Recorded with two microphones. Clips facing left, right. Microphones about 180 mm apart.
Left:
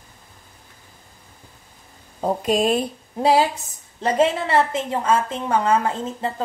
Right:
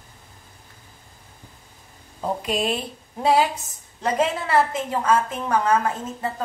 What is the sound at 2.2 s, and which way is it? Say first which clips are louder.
Speech: left 5 dB; 45° left (ahead or behind).